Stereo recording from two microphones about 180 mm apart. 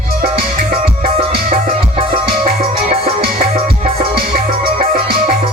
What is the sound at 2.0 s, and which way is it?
Music, 30° right (ahead or behind).